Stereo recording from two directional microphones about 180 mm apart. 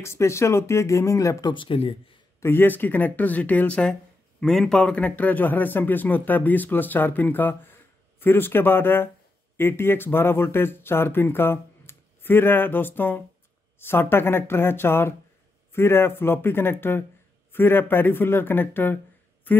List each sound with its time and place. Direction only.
0.0 s a man's voice: 15° left (ahead or behind); by 2.1 s 30° left (ahead or behind)
2.4 s a man's voice: 10° left (ahead or behind)